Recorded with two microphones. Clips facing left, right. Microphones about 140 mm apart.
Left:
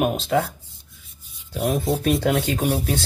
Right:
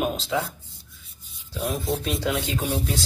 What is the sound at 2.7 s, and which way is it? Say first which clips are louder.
Speech: left 4 dB; 65° left (ahead or behind).